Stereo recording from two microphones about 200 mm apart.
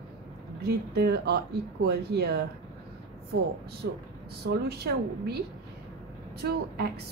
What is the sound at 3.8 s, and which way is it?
Speech, 50° right (ahead or behind).